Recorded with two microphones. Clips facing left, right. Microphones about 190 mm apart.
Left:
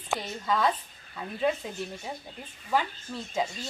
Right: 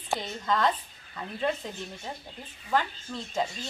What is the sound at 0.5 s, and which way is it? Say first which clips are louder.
A woman's voice: even; 5° left (ahead or behind).